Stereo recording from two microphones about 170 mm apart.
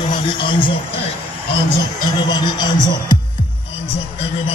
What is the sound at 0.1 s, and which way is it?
A man's voice, 30° left (ahead or behind).